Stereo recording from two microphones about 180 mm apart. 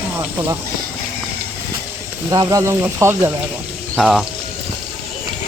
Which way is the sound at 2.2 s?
20° right (ahead or behind).